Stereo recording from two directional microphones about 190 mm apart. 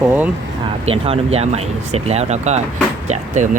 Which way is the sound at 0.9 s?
30° right (ahead or behind).